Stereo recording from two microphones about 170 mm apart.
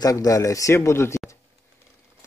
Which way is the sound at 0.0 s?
20° left (ahead or behind).